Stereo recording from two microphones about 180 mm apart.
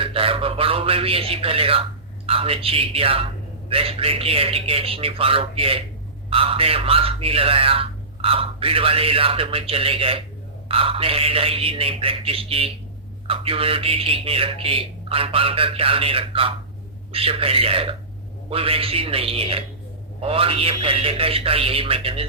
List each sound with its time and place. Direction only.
0.0 s a man's voice: 30° right (ahead or behind)